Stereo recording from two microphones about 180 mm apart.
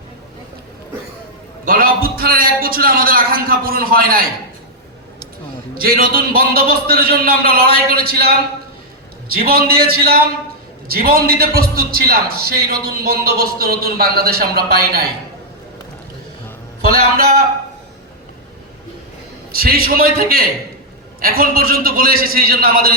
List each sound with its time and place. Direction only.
1.6 s a man's voice: 55° right (ahead or behind)
5.7 s a man's voice: 55° right (ahead or behind)
16.8 s a man's voice: 60° right (ahead or behind)
19.5 s a man's voice: 55° right (ahead or behind)